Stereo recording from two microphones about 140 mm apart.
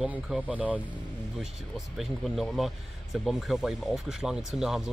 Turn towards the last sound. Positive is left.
turn(degrees=-5)  # may be behind; listen again after turning